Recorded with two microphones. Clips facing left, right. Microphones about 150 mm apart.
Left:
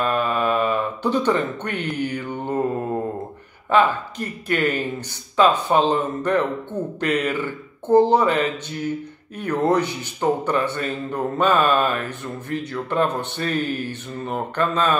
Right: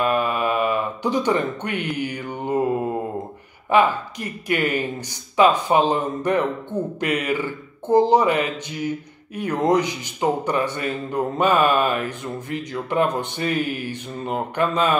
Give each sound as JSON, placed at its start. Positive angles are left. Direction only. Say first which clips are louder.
{"t": 0.0, "sound": "speech", "louder": "even", "side_deg": -15}
{"t": 3.7, "sound": "speech", "louder": "even", "side_deg": -10}